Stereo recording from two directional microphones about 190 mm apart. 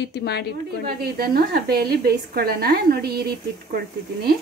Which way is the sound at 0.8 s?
55° right (ahead or behind).